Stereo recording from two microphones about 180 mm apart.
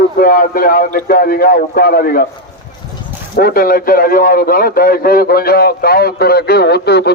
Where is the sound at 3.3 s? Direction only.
55° left (ahead or behind).